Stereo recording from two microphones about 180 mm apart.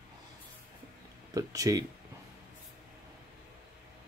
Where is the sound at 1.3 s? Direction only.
20° right (ahead or behind).